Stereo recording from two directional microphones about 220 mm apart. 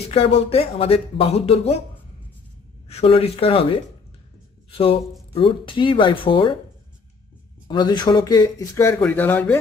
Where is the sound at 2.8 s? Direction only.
25° left (ahead or behind).